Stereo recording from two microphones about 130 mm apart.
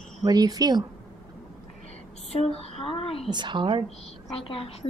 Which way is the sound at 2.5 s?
45° left (ahead or behind).